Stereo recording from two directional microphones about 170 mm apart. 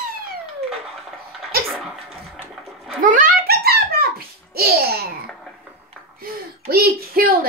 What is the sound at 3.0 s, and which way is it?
Babbling, 55° right (ahead or behind).